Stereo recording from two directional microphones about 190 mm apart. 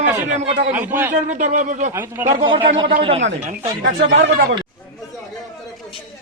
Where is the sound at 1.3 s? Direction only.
40° right (ahead or behind).